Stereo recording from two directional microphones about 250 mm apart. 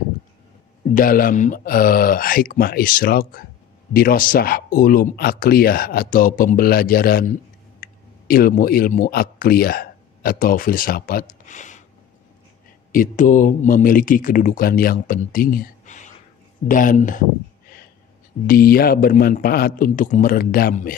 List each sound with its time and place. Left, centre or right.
0.9 s speech: left
12.9 s speech: left
18.5 s speech: left